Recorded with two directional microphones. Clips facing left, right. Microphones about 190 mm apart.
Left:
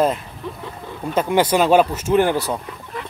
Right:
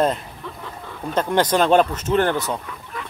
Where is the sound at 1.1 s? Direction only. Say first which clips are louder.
Left 2 dB; 10° left (ahead or behind).